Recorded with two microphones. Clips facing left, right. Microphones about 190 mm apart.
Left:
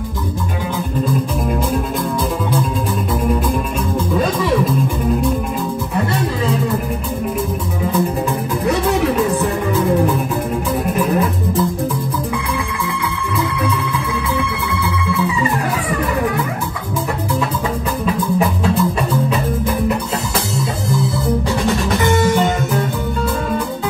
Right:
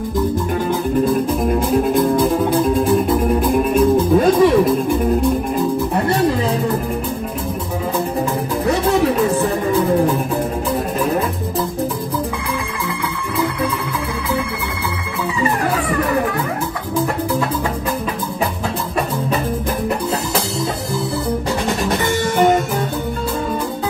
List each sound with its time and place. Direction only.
4.1 s music: 55° right (ahead or behind)